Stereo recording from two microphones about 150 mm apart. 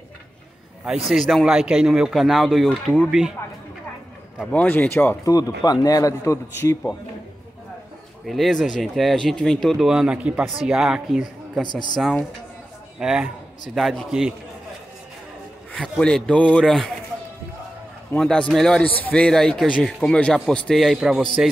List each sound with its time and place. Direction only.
0.8 s speech: centre (ahead or behind)
4.5 s a man's voice: 10° left (ahead or behind)
8.3 s speech: centre (ahead or behind)
11.6 s a man's voice: 30° left (ahead or behind)
13.0 s speech: 5° right (ahead or behind)
15.7 s speech: 5° left (ahead or behind)
18.1 s speech: 5° left (ahead or behind)